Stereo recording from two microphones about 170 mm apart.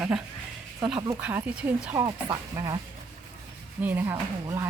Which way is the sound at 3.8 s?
15° right (ahead or behind).